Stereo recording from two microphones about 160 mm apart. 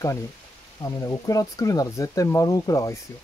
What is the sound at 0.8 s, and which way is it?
Speech, 20° left (ahead or behind).